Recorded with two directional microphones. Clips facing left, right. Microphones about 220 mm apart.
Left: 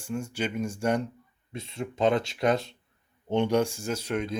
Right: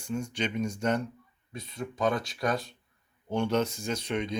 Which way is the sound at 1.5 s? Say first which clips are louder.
Left 3 dB; 25° left (ahead or behind).